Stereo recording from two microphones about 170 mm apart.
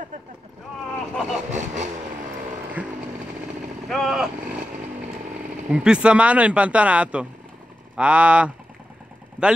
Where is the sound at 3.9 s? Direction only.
Centre (ahead or behind).